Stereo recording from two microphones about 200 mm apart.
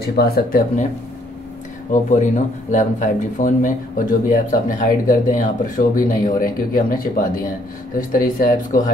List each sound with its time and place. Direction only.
0.0 s speech: 50° left (ahead or behind)
1.9 s speech: 40° left (ahead or behind)